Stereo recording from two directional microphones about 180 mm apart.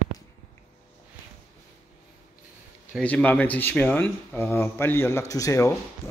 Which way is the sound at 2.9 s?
10° left (ahead or behind).